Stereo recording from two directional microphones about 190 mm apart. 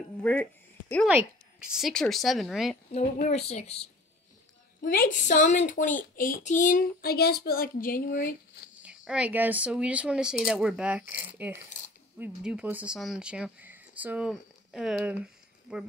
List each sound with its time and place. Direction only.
0.2 s a woman's voice: 10° left (ahead or behind)
3.0 s a woman's voice: 35° left (ahead or behind)
4.8 s speech: 45° left (ahead or behind)
8.8 s speech: 5° right (ahead or behind)